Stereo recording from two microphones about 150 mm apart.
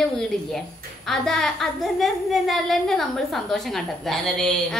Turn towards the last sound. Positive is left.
turn(degrees=5)  # may be behind; listen again after turning